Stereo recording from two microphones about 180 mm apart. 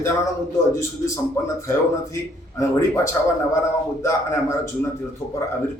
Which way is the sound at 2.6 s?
15° left (ahead or behind).